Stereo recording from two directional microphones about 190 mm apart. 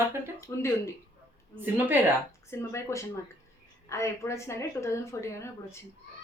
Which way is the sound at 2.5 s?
15° left (ahead or behind).